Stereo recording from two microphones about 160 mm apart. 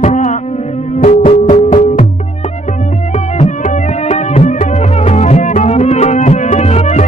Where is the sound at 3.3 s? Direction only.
50° left (ahead or behind).